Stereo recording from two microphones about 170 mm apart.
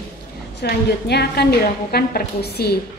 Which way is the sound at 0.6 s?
75° left (ahead or behind).